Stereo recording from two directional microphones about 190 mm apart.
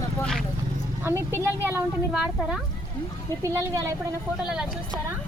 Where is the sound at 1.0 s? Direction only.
15° right (ahead or behind).